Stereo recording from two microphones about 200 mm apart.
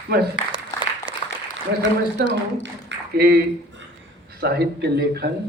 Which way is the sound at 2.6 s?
55° right (ahead or behind).